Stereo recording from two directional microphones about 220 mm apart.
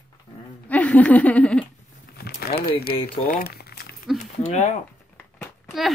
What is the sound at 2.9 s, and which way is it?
Speech, 25° left (ahead or behind).